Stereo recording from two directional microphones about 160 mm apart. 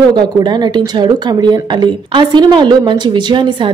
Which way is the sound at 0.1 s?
25° right (ahead or behind).